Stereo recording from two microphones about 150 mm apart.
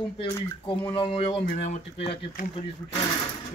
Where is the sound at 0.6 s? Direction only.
35° left (ahead or behind).